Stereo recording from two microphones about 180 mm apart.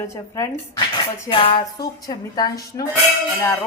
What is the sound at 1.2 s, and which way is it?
Speech, 30° left (ahead or behind).